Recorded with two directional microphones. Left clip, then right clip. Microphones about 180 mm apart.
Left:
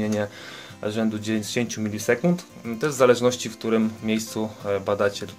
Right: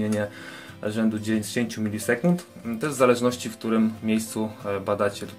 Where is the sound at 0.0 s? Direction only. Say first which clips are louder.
Left 1 dB; 25° left (ahead or behind).